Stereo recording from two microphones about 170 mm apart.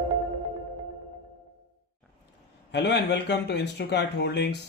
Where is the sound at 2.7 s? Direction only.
90° left.